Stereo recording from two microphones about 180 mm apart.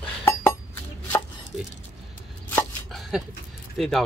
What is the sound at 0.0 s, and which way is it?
Dishes, 10° left (ahead or behind).